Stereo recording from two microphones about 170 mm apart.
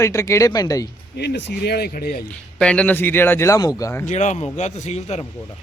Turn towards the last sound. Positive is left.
turn(degrees=40)  # may be behind; listen again after turning